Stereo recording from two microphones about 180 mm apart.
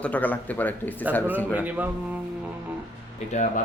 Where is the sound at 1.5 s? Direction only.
10° right (ahead or behind).